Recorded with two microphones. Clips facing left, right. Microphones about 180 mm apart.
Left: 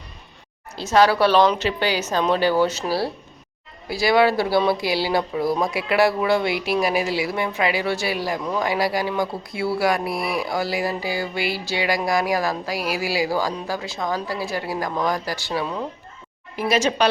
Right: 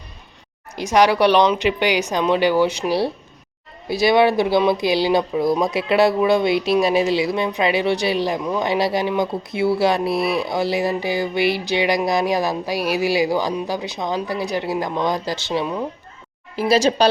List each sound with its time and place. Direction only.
0.8 s speech: 15° right (ahead or behind)
16.6 s speech: 35° right (ahead or behind)